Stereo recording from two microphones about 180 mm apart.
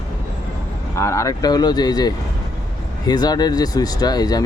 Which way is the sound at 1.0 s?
15° left (ahead or behind).